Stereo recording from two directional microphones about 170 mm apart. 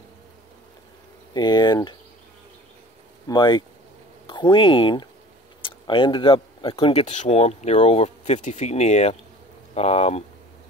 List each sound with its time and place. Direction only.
1.3 s speech: 25° left (ahead or behind)
3.3 s speech: 25° left (ahead or behind)